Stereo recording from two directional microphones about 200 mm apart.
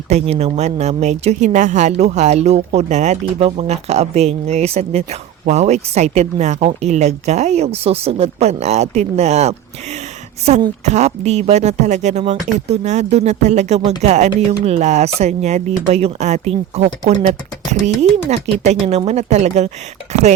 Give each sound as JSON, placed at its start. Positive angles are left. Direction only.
{"t": 0.1, "sound": "speech", "side_deg": -30}
{"t": 10.8, "sound": "speech", "side_deg": -35}